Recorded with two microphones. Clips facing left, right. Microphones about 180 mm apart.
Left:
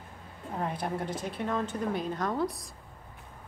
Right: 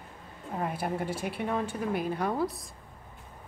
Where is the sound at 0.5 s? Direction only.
5° right (ahead or behind).